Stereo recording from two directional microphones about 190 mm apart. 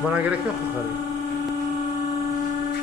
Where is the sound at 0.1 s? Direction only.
10° right (ahead or behind).